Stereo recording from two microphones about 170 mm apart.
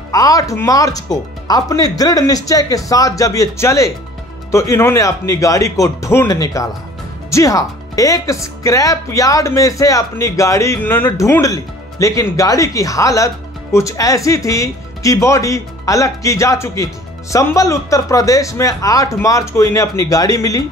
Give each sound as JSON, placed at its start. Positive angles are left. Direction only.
{"t": 0.1, "sound": "speech", "side_deg": 20}